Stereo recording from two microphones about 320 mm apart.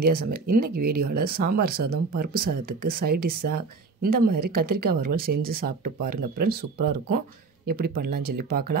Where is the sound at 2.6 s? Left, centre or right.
Right.